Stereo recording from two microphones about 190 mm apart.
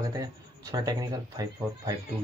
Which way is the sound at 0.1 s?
20° right (ahead or behind).